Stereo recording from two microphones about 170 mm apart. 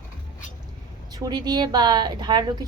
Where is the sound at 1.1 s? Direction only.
25° right (ahead or behind).